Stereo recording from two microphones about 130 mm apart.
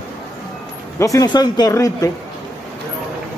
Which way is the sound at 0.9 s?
25° left (ahead or behind).